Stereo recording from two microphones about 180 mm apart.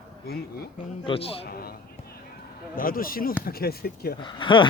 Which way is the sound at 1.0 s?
30° left (ahead or behind).